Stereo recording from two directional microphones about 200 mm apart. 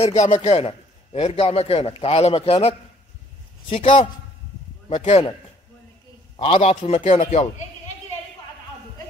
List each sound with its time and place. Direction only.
0.0 s a man's voice: 35° left (ahead or behind)
6.3 s a man's voice: 30° left (ahead or behind)